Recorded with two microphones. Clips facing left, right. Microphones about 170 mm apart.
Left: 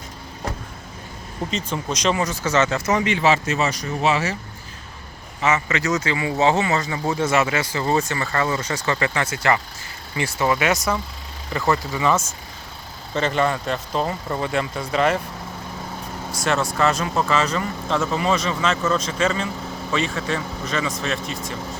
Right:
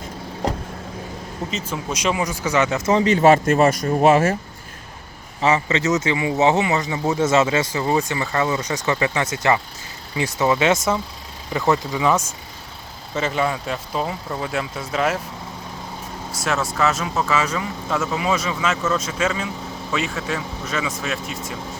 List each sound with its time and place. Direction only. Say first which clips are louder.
1.5 s speech: left 2 dB; 5° right (ahead or behind); by 3.1 s 25° right (ahead or behind)
3.1 s speech: right 6 dB; 50° right (ahead or behind)
5.4 s speech: right 3 dB; 30° right (ahead or behind)
11.5 s speech: right 2 dB; 5° right (ahead or behind)
13.1 s speech: left 1 dB; 5° right (ahead or behind)
16.4 s speech: left 1 dB; 5° right (ahead or behind)